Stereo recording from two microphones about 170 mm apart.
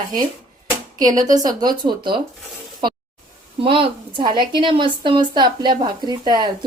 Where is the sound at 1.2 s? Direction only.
20° right (ahead or behind).